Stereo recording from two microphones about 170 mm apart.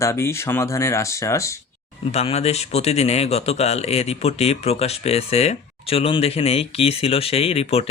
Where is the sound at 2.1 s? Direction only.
40° left (ahead or behind).